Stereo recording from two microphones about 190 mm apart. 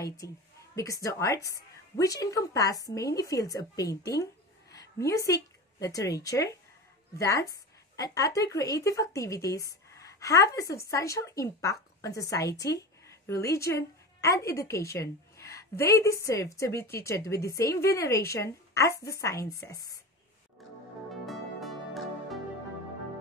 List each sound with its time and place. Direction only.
0.2 s a woman's voice: 15° left (ahead or behind)
21.1 s music: centre (ahead or behind)